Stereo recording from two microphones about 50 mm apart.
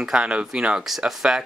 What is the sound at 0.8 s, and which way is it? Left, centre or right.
Speech, centre.